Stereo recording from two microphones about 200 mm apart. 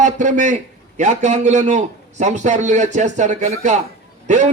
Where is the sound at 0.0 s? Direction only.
40° right (ahead or behind).